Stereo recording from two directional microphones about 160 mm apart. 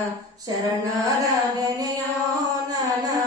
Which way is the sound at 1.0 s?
20° right (ahead or behind).